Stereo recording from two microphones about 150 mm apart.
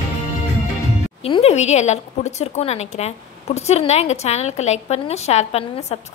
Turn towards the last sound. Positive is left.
turn(degrees=45)  # may be behind; listen again after turning